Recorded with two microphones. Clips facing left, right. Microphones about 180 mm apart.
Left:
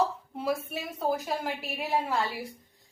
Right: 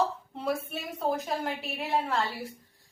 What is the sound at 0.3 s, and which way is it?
A woman's voice, 5° left (ahead or behind).